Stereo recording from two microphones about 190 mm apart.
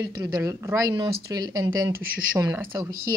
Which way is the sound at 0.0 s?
20° right (ahead or behind).